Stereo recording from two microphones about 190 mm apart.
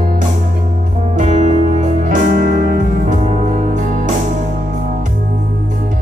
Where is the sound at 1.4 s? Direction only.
40° right (ahead or behind).